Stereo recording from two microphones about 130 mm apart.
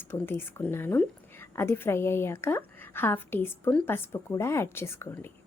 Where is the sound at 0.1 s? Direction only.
15° left (ahead or behind).